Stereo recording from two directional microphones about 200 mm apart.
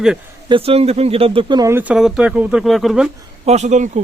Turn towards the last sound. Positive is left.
turn(degrees=-35)  # may be behind; listen again after turning